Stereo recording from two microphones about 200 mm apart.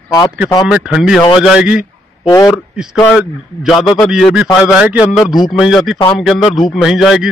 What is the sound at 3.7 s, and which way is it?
Speech, 20° left (ahead or behind).